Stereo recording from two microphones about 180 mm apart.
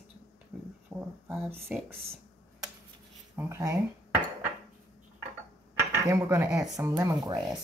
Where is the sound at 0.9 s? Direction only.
Centre (ahead or behind).